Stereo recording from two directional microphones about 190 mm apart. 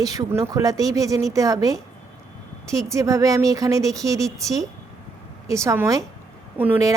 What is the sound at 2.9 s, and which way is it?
A woman's voice, 15° right (ahead or behind).